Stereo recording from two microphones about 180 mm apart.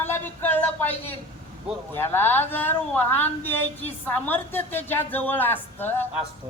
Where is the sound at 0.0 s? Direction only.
10° left (ahead or behind).